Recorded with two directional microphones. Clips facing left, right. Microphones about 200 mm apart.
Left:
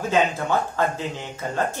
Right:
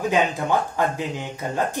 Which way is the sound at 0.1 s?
15° right (ahead or behind).